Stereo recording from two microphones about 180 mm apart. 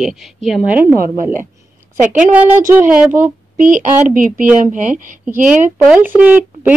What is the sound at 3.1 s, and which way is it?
Speech, 45° right (ahead or behind).